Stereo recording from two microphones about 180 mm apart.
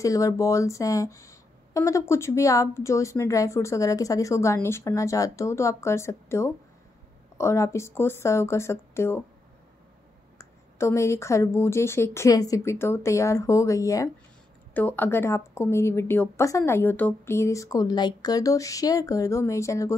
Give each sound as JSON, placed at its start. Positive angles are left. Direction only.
{"t": 0.0, "sound": "speech", "side_deg": 20}
{"t": 10.3, "sound": "speech", "side_deg": 15}